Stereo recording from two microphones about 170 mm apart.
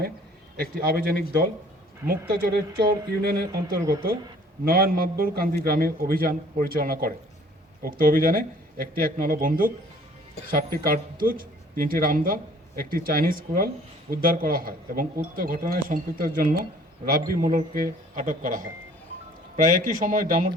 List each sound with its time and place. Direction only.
0.5 s speech: 65° right (ahead or behind)